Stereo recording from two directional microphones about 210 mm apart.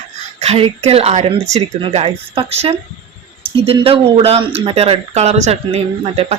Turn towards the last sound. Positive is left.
turn(degrees=-30)  # may be behind; listen again after turning